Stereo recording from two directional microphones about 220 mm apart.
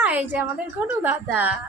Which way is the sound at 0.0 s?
5° right (ahead or behind).